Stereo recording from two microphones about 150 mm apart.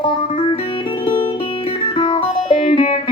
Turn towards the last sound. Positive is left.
turn(degrees=35)  # may be behind; listen again after turning